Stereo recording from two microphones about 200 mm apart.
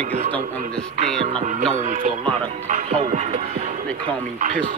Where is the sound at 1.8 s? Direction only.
40° right (ahead or behind).